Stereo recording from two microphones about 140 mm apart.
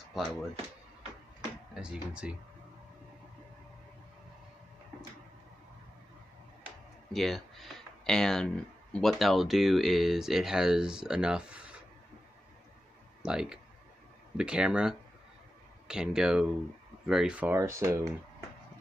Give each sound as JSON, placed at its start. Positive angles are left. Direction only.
{"t": 0.1, "sound": "speech", "side_deg": 0}
{"t": 1.7, "sound": "speech", "side_deg": -5}
{"t": 7.1, "sound": "speech", "side_deg": 0}
{"t": 13.2, "sound": "speech", "side_deg": -5}
{"t": 17.6, "sound": "speech", "side_deg": -20}